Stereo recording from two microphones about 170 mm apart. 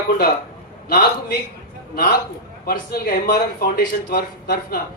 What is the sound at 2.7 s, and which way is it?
Speech, 60° left (ahead or behind).